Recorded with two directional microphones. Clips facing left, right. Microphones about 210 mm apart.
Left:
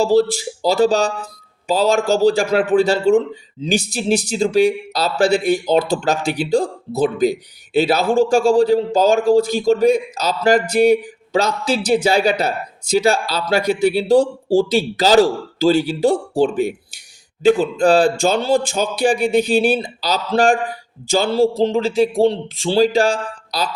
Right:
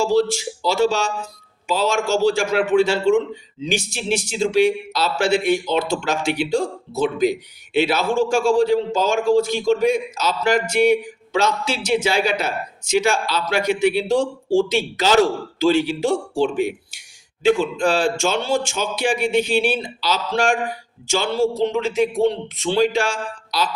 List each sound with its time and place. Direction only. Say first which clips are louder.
0.0 s speech: left 3 dB; 35° left (ahead or behind)